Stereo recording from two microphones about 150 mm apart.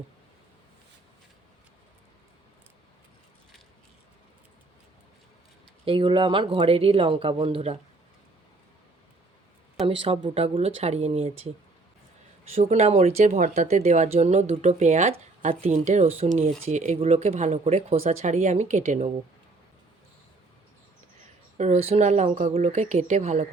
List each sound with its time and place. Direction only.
5.8 s speech: 35° right (ahead or behind)
9.8 s speech: 40° right (ahead or behind)
12.5 s speech: 45° right (ahead or behind)
21.6 s speech: 45° right (ahead or behind)